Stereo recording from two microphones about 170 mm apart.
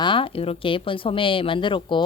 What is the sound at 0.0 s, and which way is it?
Speech, 30° left (ahead or behind).